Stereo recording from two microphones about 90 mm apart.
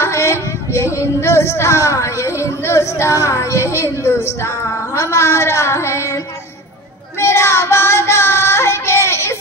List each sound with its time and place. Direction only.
0.0 s child singing: 30° left (ahead or behind)